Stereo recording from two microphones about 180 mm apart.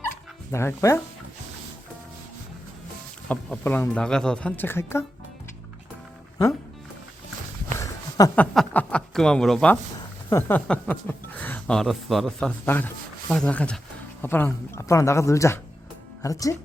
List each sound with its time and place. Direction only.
0.5 s speech: 15° left (ahead or behind)
3.2 s speech: 10° left (ahead or behind)
7.8 s a sound: 15° left (ahead or behind)
8.5 s speech: 5° left (ahead or behind)